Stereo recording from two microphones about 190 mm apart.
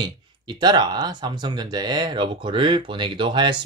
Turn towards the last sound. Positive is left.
turn(degrees=-25)  # may be behind; listen again after turning